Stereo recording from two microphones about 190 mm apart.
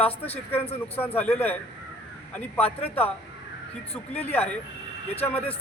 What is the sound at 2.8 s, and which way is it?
Speech, 10° left (ahead or behind).